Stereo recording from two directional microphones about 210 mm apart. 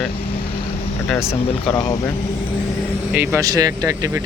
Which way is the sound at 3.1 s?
15° right (ahead or behind).